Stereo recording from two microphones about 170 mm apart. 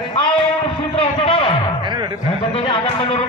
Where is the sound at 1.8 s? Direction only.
25° right (ahead or behind).